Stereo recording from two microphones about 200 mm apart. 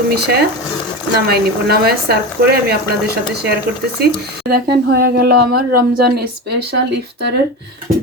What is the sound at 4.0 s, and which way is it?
Speech, 50° right (ahead or behind).